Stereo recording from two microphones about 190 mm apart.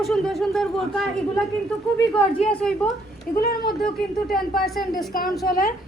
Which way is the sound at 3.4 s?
55° left (ahead or behind).